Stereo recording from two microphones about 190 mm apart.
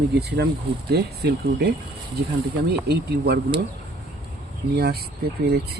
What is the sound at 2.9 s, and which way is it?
Speech, 60° right (ahead or behind).